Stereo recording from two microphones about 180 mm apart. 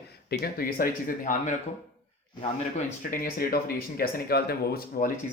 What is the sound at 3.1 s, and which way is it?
Speech, 55° left (ahead or behind).